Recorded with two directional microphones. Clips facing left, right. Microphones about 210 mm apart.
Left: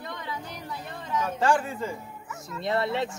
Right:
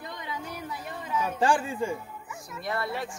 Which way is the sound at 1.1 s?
15° right (ahead or behind).